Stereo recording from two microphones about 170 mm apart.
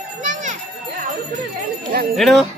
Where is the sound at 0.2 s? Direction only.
50° right (ahead or behind).